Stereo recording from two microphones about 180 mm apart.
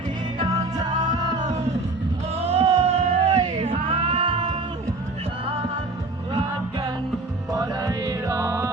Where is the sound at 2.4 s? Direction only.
35° right (ahead or behind).